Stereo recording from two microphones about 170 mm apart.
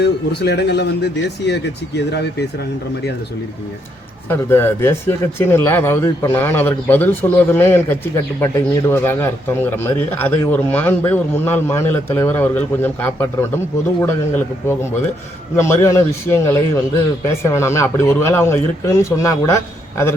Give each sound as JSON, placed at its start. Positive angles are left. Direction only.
{"t": 0.0, "sound": "a man's voice", "side_deg": 75}
{"t": 4.3, "sound": "speech", "side_deg": 15}